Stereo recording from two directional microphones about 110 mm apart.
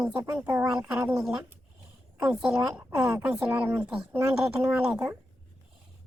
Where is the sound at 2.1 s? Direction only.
10° right (ahead or behind).